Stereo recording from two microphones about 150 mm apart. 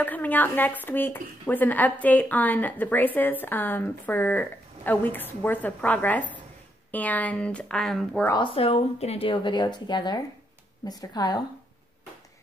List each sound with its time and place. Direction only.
0.0 s speech: 10° left (ahead or behind)
8.4 s a woman's voice: 40° left (ahead or behind)